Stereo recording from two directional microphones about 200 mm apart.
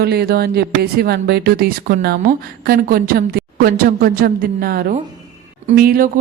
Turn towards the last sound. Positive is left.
turn(degrees=-45)  # may be behind; listen again after turning